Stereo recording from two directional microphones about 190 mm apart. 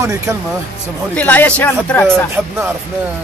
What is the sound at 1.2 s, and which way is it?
Speech, 5° left (ahead or behind).